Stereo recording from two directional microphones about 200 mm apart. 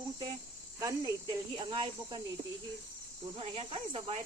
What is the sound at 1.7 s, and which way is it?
Speech, 25° right (ahead or behind).